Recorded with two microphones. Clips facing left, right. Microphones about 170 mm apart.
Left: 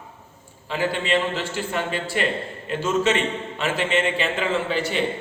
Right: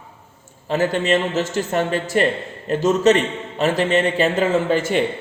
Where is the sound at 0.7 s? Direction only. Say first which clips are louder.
Right 5 dB; 45° right (ahead or behind).